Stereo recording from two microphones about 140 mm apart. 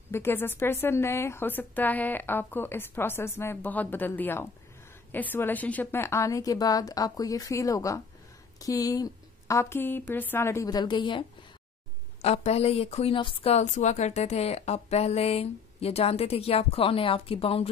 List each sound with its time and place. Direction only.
0.1 s a woman's voice: 15° left (ahead or behind); by 11.2 s 35° left (ahead or behind)
12.2 s speech: 50° left (ahead or behind)